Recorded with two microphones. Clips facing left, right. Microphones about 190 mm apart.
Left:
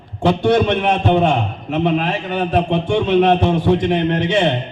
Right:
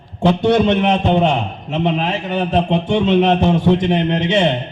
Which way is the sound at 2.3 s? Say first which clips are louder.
Right 1 dB; 25° right (ahead or behind).